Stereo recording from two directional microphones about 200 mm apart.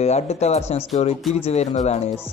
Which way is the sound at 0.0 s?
30° left (ahead or behind).